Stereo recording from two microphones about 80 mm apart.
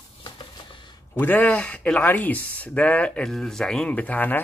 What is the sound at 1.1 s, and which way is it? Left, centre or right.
Speech, left.